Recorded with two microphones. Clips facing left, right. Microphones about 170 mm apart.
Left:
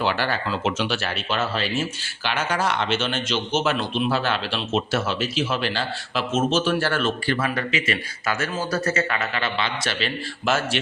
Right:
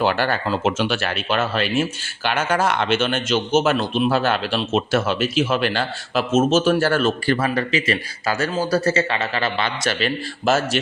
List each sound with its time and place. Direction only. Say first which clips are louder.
0.0 s speech: right 4 dB; 50° right (ahead or behind)